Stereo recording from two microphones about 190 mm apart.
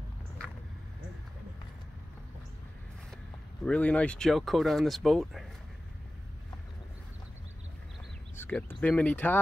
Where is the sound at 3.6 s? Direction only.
5° left (ahead or behind).